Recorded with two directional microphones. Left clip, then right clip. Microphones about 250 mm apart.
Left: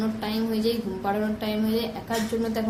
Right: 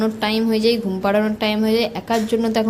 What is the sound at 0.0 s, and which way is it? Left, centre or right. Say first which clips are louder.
A woman's voice: right 9 dB; right.